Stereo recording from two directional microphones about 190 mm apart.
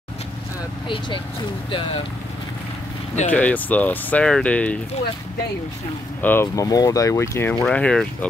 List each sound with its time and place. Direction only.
0.8 s speech: 25° left (ahead or behind)
3.3 s speech: 10° left (ahead or behind)
6.2 s speech: 10° left (ahead or behind)